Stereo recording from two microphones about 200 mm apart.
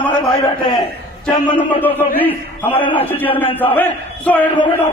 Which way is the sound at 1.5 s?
25° left (ahead or behind).